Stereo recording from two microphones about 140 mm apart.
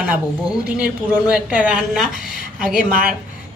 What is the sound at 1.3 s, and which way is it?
A woman's voice, 5° right (ahead or behind).